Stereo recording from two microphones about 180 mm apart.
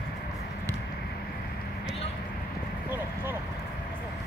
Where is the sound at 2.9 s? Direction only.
10° right (ahead or behind).